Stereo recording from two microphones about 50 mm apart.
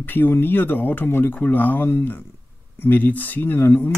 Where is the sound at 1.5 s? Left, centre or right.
Left.